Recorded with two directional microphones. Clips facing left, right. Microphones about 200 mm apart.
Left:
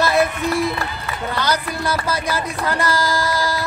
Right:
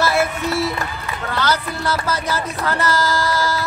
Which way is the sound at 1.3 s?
15° left (ahead or behind).